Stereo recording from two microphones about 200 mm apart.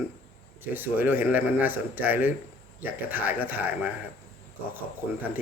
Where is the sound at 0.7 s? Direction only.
10° right (ahead or behind).